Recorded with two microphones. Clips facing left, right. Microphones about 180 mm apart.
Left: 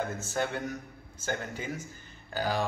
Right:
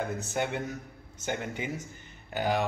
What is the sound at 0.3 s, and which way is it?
A man's voice, 20° right (ahead or behind).